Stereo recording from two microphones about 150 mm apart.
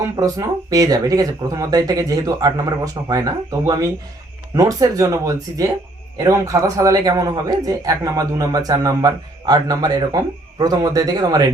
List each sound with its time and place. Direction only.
0.2 s a man's voice: 25° right (ahead or behind)